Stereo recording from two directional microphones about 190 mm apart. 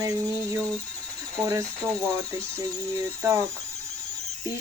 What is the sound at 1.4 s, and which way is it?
Speech, 15° right (ahead or behind).